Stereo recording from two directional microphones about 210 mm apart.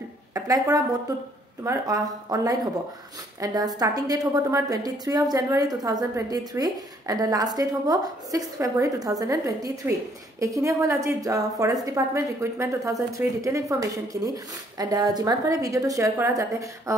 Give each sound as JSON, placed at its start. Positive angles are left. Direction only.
{"t": 0.3, "sound": "a woman's voice", "side_deg": -15}